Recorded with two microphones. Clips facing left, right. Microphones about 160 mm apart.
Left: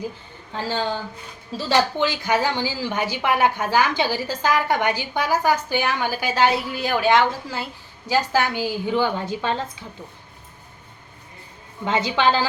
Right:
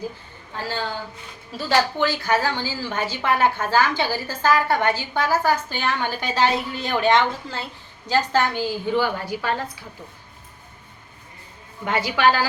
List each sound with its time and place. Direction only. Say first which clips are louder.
1.5 s a woman's voice: left 1 dB; 20° left (ahead or behind)
11.9 s a woman's voice: even; 20° left (ahead or behind)